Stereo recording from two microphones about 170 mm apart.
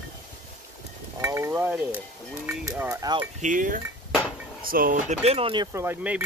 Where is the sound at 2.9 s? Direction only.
25° right (ahead or behind).